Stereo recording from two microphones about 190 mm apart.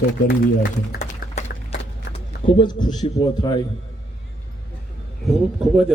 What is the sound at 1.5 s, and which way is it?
Clip-clop, 60° left (ahead or behind).